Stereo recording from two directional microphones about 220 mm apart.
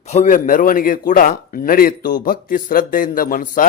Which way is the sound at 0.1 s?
35° left (ahead or behind).